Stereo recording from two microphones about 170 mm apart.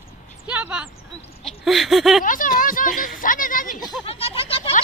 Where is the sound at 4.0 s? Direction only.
35° left (ahead or behind).